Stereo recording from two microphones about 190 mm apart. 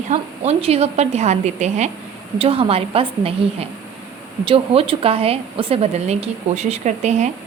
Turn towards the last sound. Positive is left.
turn(degrees=-35)  # may be behind; listen again after turning